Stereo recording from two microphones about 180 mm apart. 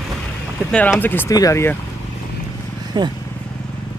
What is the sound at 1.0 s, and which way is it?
Speech, 10° left (ahead or behind).